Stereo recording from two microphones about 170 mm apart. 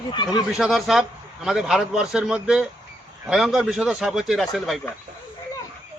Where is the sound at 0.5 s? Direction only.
Centre (ahead or behind).